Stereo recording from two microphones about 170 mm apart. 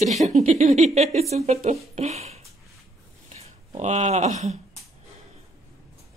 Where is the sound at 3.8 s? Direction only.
40° right (ahead or behind).